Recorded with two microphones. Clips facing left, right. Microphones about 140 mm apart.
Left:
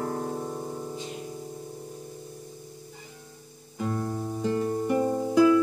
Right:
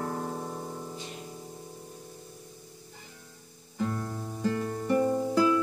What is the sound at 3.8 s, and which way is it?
Music, 25° left (ahead or behind).